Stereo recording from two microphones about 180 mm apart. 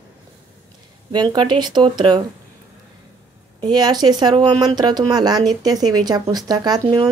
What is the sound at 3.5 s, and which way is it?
Speech, 25° right (ahead or behind).